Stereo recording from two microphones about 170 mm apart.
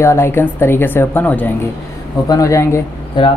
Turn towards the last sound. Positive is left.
turn(degrees=30)  # may be behind; listen again after turning